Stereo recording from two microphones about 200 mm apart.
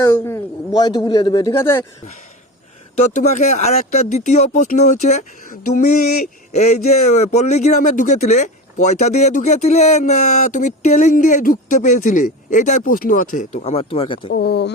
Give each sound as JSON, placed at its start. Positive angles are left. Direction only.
{"t": 0.0, "sound": "a man's voice", "side_deg": 15}
{"t": 2.9, "sound": "speech", "side_deg": 35}
{"t": 14.3, "sound": "speech", "side_deg": 55}